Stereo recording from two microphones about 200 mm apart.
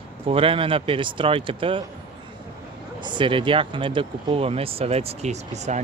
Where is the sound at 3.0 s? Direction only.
25° right (ahead or behind).